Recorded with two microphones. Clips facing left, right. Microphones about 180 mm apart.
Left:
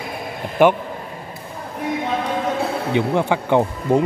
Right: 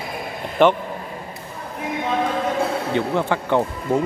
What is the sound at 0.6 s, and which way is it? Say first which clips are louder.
Speech: left 1 dB; 10° left (ahead or behind).